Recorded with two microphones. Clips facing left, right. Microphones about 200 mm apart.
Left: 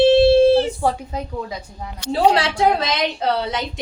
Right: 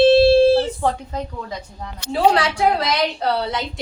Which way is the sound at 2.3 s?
25° left (ahead or behind).